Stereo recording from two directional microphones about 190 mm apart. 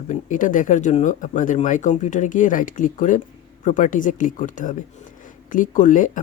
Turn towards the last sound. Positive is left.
turn(degrees=45)  # may be behind; listen again after turning